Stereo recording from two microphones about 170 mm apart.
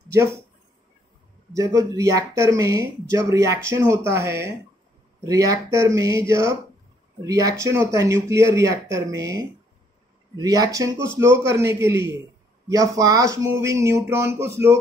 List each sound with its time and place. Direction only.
0.1 s speech: 15° right (ahead or behind)
1.5 s speech: 20° right (ahead or behind)